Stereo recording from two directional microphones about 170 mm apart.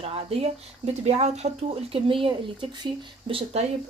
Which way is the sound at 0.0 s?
35° right (ahead or behind).